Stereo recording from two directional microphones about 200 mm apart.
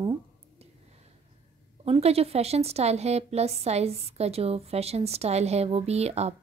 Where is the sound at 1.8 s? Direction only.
30° right (ahead or behind).